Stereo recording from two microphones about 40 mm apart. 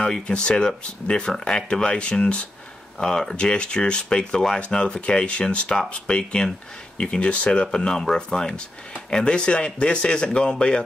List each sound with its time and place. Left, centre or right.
0.0 s speech: left
3.0 s speech: centre; by 7.6 s left
7.6 s speech: centre